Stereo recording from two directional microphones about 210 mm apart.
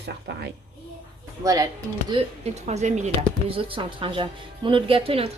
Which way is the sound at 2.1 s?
30° right (ahead or behind).